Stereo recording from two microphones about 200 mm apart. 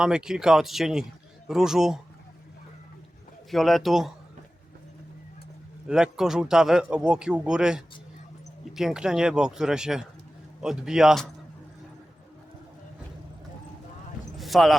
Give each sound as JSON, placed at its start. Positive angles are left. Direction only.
{"t": 0.0, "sound": "speech", "side_deg": -5}
{"t": 3.5, "sound": "speech", "side_deg": 0}
{"t": 5.9, "sound": "speech", "side_deg": -5}
{"t": 14.3, "sound": "a sound", "side_deg": 0}